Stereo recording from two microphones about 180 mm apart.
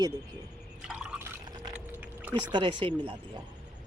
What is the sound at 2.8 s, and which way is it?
Speech, 30° right (ahead or behind).